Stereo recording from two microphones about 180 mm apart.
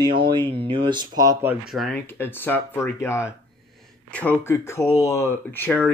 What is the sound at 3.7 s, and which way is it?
Speech, 5° left (ahead or behind).